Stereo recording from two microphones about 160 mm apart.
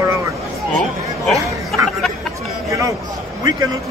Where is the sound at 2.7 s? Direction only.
20° right (ahead or behind).